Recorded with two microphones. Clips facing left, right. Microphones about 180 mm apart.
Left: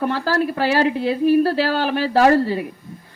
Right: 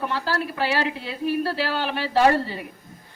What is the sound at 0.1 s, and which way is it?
A woman's voice, 45° left (ahead or behind).